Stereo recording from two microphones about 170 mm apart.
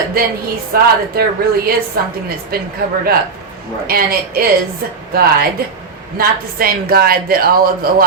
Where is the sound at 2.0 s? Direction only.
60° right (ahead or behind).